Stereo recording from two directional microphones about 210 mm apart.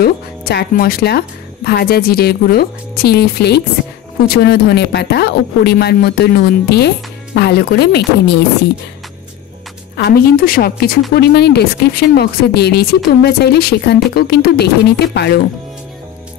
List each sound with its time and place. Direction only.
0.0 s a woman's voice: 45° left (ahead or behind)
9.9 s a woman's voice: 50° left (ahead or behind)